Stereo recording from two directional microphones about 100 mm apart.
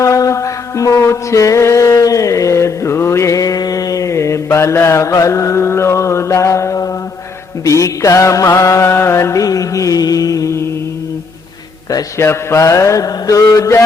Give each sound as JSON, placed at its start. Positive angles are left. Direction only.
{"t": 0.0, "sound": "mantra", "side_deg": 30}
{"t": 7.6, "sound": "music", "side_deg": 30}
{"t": 11.9, "sound": "music", "side_deg": 30}